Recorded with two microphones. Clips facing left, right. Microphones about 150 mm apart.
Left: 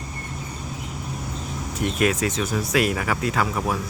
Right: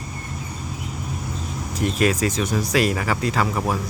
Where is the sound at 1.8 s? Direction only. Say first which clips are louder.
Right 2 dB; centre (ahead or behind).